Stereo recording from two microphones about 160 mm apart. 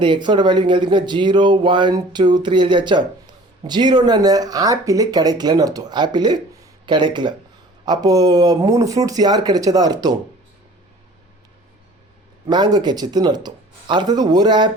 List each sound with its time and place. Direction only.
0.0 s speech: 30° right (ahead or behind)
12.5 s speech: 25° right (ahead or behind)